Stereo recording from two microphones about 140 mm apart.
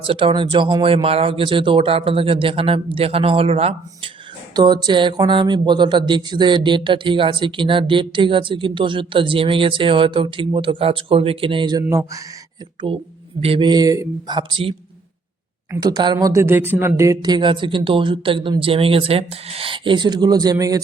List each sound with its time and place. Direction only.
0.0 s speech: 40° right (ahead or behind)
4.5 s speech: 30° right (ahead or behind)
12.9 s speech: 40° right (ahead or behind)
15.8 s speech: 30° right (ahead or behind)